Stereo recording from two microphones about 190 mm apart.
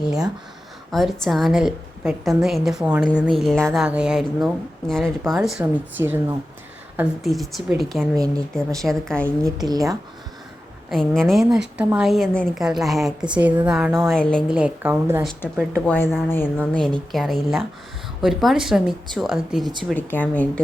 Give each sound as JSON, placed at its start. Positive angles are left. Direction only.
{"t": 0.0, "sound": "speech", "side_deg": -5}
{"t": 8.8, "sound": "speech", "side_deg": 0}
{"t": 9.6, "sound": "speech", "side_deg": -20}
{"t": 10.8, "sound": "speech", "side_deg": 0}
{"t": 14.1, "sound": "speech", "side_deg": 5}
{"t": 14.5, "sound": "a woman's voice", "side_deg": -10}
{"t": 15.2, "sound": "speech", "side_deg": 0}